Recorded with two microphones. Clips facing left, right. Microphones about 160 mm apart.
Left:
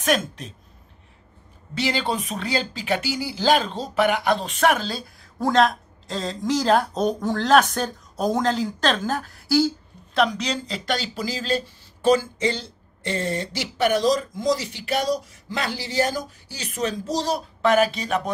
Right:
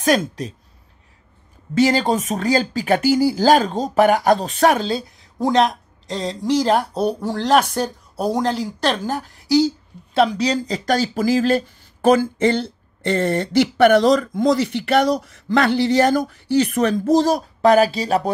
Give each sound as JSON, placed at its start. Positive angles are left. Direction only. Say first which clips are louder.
{"t": 0.0, "sound": "speech", "louder": "right 5 dB", "side_deg": -35}
{"t": 1.8, "sound": "speech", "louder": "right 8 dB", "side_deg": -45}
{"t": 5.2, "sound": "speech", "louder": "right 1 dB", "side_deg": -15}
{"t": 10.1, "sound": "speech", "louder": "right 5 dB", "side_deg": -30}